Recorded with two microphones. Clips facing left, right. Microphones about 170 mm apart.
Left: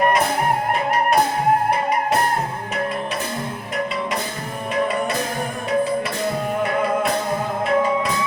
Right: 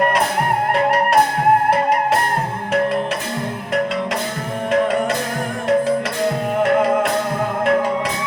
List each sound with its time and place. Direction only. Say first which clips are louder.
1.7 s music: right 4 dB; 75° right (ahead or behind)
6.6 s music: right 6 dB; 75° right (ahead or behind)